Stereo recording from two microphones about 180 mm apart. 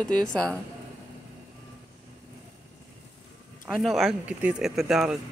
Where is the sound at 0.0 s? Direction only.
5° left (ahead or behind).